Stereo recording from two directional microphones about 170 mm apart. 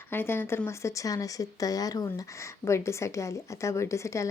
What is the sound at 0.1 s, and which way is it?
Speech, 15° left (ahead or behind).